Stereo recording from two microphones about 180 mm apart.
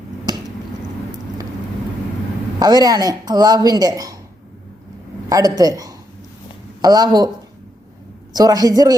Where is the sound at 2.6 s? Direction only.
20° right (ahead or behind).